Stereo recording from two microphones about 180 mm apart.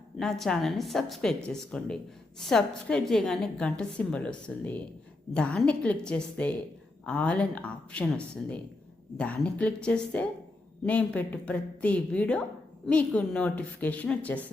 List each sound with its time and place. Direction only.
0.2 s a woman's voice: centre (ahead or behind)